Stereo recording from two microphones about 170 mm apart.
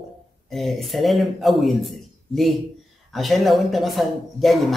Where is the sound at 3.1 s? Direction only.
Centre (ahead or behind).